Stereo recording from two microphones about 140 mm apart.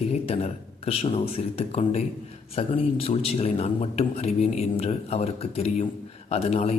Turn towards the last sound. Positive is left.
turn(degrees=45)  # may be behind; listen again after turning